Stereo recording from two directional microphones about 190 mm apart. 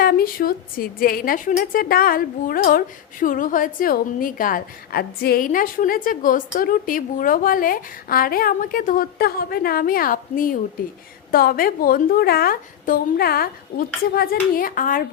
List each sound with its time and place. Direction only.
0.0 s a woman's voice: 50° left (ahead or behind)